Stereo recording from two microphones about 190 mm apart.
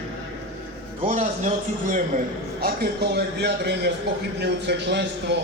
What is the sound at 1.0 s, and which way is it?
A man's voice, 40° right (ahead or behind).